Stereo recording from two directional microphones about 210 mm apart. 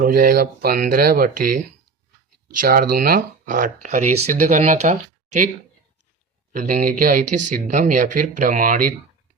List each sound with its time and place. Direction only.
0.0 s speech: 40° right (ahead or behind)
2.6 s speech: 45° right (ahead or behind)
6.5 s speech: 40° right (ahead or behind)